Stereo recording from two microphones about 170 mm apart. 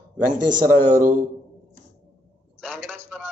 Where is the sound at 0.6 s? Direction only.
45° right (ahead or behind).